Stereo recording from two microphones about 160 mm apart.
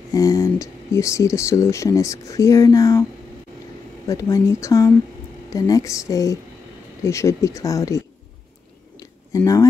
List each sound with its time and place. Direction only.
0.1 s speech: 20° left (ahead or behind)
4.1 s speech: 20° left (ahead or behind)
9.0 s a sound: 20° left (ahead or behind)